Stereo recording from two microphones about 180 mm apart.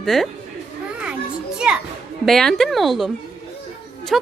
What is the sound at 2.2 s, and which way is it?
A woman's voice, centre (ahead or behind).